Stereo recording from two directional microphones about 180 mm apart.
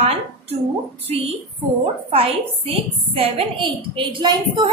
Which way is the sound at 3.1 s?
30° right (ahead or behind).